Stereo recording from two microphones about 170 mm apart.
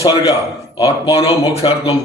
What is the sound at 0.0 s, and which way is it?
A man's voice, 35° left (ahead or behind).